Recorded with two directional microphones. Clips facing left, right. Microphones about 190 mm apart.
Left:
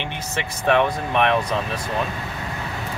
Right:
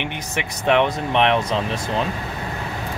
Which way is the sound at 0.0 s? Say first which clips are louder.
Right 1 dB; 15° right (ahead or behind).